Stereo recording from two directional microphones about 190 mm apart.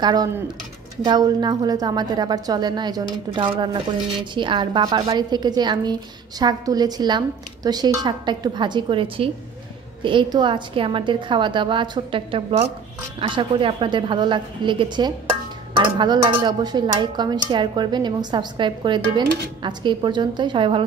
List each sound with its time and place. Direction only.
0.0 s speech: 20° right (ahead or behind)